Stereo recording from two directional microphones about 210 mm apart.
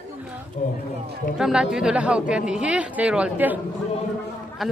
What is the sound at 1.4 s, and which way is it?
A woman's voice, 5° right (ahead or behind).